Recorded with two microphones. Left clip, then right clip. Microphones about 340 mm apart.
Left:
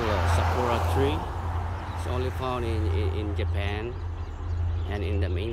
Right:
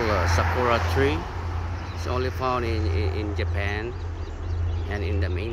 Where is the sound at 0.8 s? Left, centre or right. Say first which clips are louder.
Right 3 dB; left.